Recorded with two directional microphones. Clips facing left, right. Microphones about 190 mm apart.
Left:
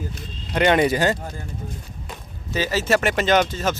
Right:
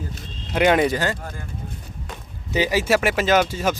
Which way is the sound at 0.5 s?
5° right (ahead or behind).